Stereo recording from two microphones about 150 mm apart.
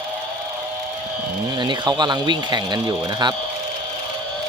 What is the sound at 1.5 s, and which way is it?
Speech, 30° right (ahead or behind).